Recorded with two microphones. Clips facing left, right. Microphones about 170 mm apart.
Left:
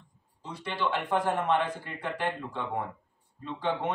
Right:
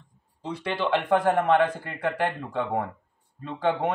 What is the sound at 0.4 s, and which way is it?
A man's voice, 75° right (ahead or behind).